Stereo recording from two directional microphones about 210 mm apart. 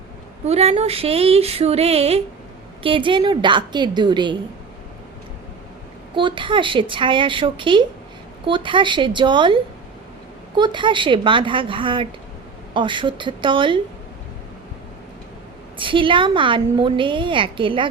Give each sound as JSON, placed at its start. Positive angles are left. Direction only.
{"t": 0.4, "sound": "a woman's voice", "side_deg": -30}
{"t": 6.1, "sound": "a woman's voice", "side_deg": -25}
{"t": 15.8, "sound": "a woman's voice", "side_deg": -25}